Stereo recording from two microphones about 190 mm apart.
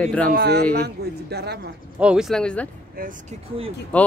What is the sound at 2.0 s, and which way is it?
Speech, 5° right (ahead or behind).